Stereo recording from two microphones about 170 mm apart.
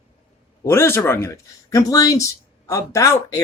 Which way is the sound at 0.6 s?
15° left (ahead or behind).